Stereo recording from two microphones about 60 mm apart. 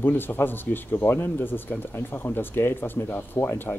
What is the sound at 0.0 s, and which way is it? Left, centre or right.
Speech, left.